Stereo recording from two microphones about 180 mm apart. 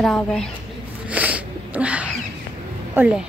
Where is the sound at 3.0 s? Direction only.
10° right (ahead or behind).